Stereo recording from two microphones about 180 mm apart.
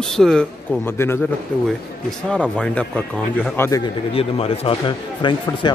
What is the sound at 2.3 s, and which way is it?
Speech, 5° left (ahead or behind).